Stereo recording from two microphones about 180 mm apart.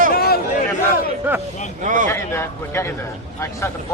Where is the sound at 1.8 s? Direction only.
45° right (ahead or behind).